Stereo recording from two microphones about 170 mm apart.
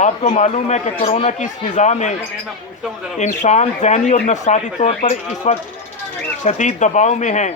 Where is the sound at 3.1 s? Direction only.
45° left (ahead or behind).